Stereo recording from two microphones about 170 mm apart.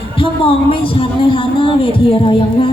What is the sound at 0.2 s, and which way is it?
Speech, 30° left (ahead or behind).